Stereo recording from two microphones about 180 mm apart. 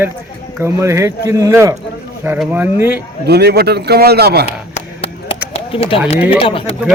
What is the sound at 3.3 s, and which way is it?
A man's voice, 65° right (ahead or behind).